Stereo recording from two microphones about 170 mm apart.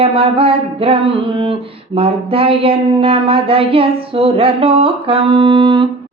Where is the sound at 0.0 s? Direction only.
35° right (ahead or behind).